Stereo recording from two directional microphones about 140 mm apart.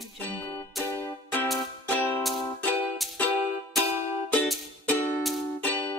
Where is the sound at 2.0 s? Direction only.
15° left (ahead or behind).